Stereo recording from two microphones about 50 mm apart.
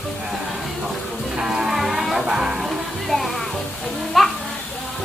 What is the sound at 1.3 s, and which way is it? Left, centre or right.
Music, centre.